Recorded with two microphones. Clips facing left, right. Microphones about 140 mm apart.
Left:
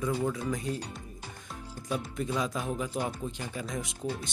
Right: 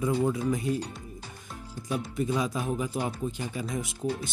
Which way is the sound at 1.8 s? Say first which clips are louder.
Right 3 dB; 5° right (ahead or behind).